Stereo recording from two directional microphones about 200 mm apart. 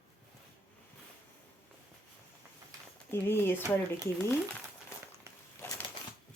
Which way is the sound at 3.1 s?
10° left (ahead or behind).